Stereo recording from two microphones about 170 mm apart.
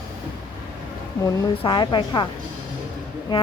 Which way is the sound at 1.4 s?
25° left (ahead or behind).